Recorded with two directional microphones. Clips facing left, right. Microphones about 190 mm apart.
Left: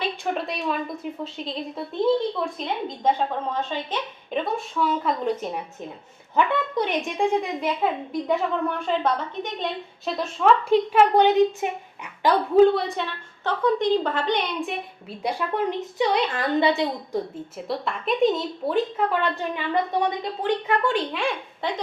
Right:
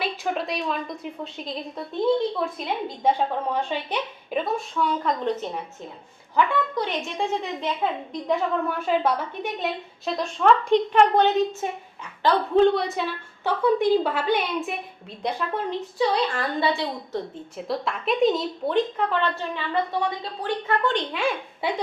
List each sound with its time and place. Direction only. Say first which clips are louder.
0.0 s a woman's voice: even; centre (ahead or behind)
3.0 s a woman's voice: right 1 dB; 10° right (ahead or behind); by 5.5 s 10° left (ahead or behind)
6.3 s speech: left 1 dB; 20° left (ahead or behind)
8.1 s a woman's voice: even; centre (ahead or behind)
16.0 s a woman's voice: even; 20° left (ahead or behind)
17.3 s speech: even; centre (ahead or behind); by 20.7 s 20° left (ahead or behind)
20.8 s a woman's voice: even; centre (ahead or behind)